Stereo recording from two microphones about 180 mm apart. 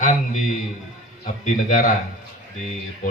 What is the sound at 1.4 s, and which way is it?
Speech, 50° left (ahead or behind).